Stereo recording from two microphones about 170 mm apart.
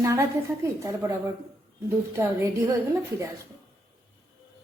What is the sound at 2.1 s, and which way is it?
A woman's voice, 15° right (ahead or behind).